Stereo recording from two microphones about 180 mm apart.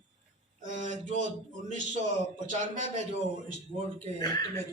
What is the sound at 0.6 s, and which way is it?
Speech, 45° right (ahead or behind).